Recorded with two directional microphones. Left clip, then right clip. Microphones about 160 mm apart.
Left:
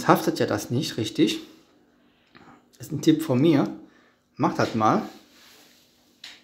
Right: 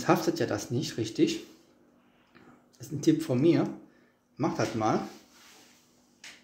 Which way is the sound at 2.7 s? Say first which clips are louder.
Left 5 dB; 35° left (ahead or behind).